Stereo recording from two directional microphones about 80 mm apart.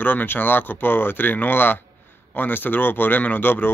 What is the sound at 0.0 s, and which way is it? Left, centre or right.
Speech, left.